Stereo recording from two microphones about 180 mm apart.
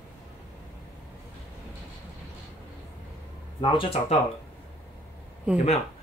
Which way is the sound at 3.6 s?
30° left (ahead or behind).